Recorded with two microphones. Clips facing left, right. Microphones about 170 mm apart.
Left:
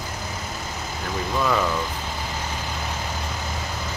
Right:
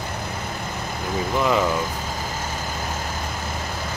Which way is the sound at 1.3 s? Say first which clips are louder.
Right 2 dB; 20° right (ahead or behind).